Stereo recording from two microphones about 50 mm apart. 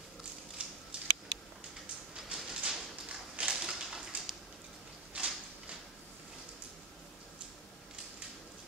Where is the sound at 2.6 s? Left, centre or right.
Centre.